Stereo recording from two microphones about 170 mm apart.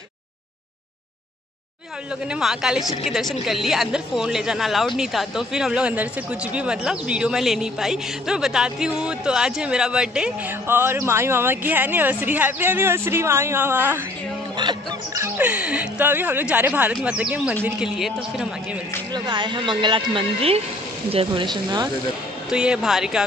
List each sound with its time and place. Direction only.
2.2 s speech: 5° right (ahead or behind)
14.6 s a woman's voice: 25° right (ahead or behind)
15.2 s speech: 10° right (ahead or behind)
19.1 s a woman's voice: 25° right (ahead or behind)
22.5 s speech: 5° right (ahead or behind)